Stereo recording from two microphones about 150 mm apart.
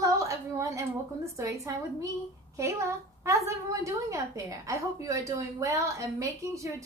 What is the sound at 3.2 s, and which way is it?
A woman's voice, 20° right (ahead or behind).